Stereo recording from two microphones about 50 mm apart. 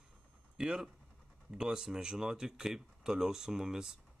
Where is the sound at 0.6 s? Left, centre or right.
Centre.